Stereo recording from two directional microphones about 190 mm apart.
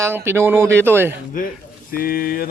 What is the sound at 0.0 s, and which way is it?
Speech, 10° right (ahead or behind).